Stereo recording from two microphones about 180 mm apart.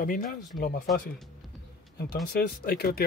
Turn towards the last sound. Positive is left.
turn(degrees=60)  # may be behind; listen again after turning